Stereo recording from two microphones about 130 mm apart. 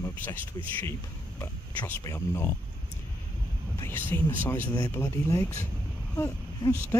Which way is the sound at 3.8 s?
15° left (ahead or behind).